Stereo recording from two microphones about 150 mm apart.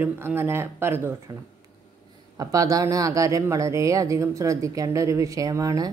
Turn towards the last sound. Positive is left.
turn(degrees=-25)  # may be behind; listen again after turning